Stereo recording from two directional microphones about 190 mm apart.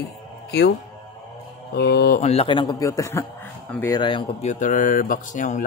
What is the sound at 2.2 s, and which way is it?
A man's voice, 30° left (ahead or behind).